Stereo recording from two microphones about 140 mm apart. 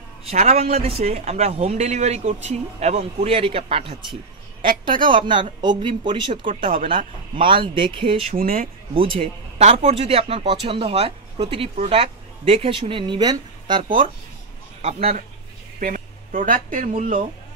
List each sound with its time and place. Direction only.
0.2 s speech: 50° right (ahead or behind); by 6.5 s 35° right (ahead or behind)
6.5 s speech: 65° right (ahead or behind)
7.4 s speech: 35° right (ahead or behind)
8.4 s speech: 90° right
8.9 s speech: 40° right (ahead or behind)
14.8 s a man's voice: 50° right (ahead or behind)
15.8 s speech: 70° right (ahead or behind)